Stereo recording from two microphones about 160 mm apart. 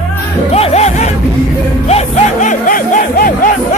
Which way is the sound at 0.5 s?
40° left (ahead or behind).